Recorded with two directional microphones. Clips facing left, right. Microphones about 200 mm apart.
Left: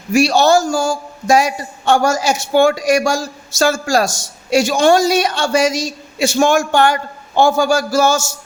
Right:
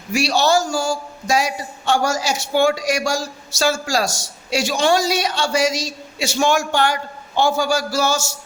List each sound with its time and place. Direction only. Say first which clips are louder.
0.1 s a man's voice: left 5 dB; 50° left (ahead or behind)